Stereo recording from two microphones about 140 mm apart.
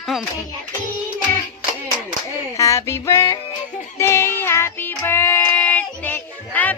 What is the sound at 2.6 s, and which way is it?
Music, 20° left (ahead or behind).